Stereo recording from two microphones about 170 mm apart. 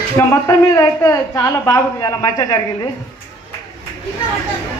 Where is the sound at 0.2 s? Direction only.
15° left (ahead or behind).